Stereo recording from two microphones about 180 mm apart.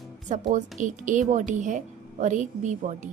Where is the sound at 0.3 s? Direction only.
40° right (ahead or behind).